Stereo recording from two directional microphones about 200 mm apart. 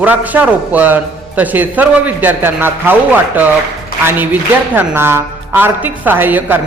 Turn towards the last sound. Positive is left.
turn(degrees=-10)  # may be behind; listen again after turning